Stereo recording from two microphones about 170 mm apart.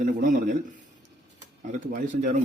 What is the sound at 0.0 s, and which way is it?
Speech, 55° right (ahead or behind).